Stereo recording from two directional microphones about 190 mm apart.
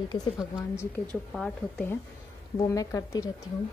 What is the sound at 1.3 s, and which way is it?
Speech, centre (ahead or behind).